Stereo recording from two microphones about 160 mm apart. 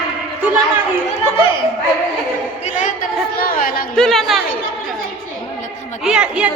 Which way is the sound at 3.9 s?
5° left (ahead or behind).